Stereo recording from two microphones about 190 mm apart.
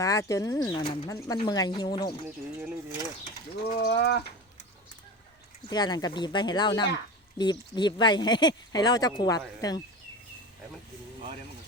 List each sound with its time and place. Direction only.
0.0 s speech: 15° left (ahead or behind)
2.2 s speech: 10° right (ahead or behind)
3.8 s speech: 60° left (ahead or behind)
5.6 s speech: 20° left (ahead or behind)